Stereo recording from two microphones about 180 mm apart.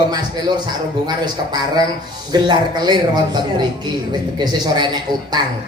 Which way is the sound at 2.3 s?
25° right (ahead or behind).